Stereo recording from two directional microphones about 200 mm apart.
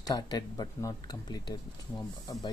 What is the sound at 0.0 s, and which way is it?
Speech, 20° left (ahead or behind).